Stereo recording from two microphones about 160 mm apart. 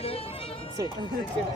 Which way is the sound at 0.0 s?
35° left (ahead or behind).